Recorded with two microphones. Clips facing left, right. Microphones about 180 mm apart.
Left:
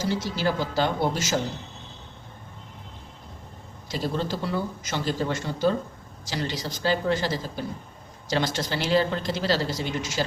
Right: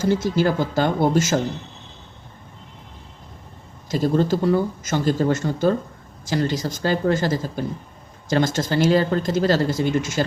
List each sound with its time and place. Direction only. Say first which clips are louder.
0.0 s speech: right 7 dB; 50° right (ahead or behind)
3.8 s speech: right 9 dB; 45° right (ahead or behind)